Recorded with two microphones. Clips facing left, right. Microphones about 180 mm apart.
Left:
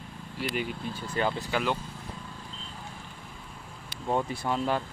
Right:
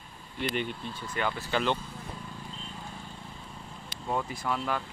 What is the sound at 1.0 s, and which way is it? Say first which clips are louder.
Speech: left 3 dB; 30° left (ahead or behind).